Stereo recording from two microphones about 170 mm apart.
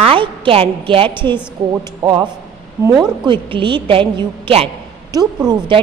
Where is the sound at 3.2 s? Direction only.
30° right (ahead or behind).